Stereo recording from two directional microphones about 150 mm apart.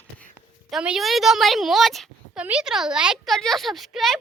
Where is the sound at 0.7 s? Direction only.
5° right (ahead or behind).